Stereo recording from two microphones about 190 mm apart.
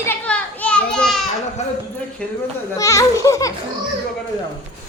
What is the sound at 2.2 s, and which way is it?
A child's voice, 5° left (ahead or behind).